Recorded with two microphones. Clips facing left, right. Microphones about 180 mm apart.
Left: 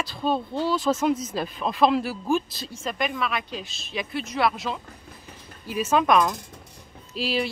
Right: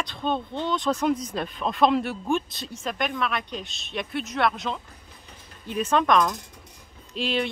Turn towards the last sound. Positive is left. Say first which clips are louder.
# even
turn(degrees=5)  # may be behind; listen again after turning